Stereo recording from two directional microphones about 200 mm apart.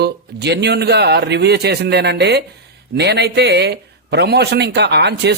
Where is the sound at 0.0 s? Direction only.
55° right (ahead or behind).